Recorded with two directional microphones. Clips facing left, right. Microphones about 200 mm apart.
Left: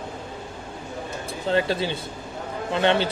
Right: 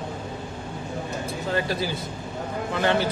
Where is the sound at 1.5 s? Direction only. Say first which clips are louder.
Left 4 dB; 25° left (ahead or behind).